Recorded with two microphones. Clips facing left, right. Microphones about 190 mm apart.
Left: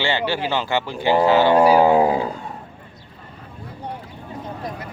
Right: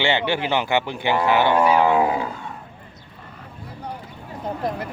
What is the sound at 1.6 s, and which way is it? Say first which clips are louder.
Speech: left 4 dB; 35° left (ahead or behind).